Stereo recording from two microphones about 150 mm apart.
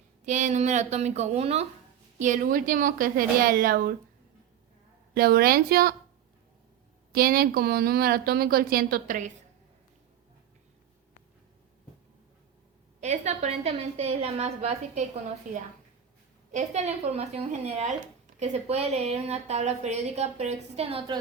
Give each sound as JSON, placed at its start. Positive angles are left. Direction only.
{"t": 0.3, "sound": "speech", "side_deg": -50}
{"t": 2.1, "sound": "speech", "side_deg": -55}
{"t": 5.1, "sound": "speech", "side_deg": -85}
{"t": 7.1, "sound": "speech", "side_deg": -85}
{"t": 13.0, "sound": "speech", "side_deg": -50}
{"t": 16.5, "sound": "speech", "side_deg": -50}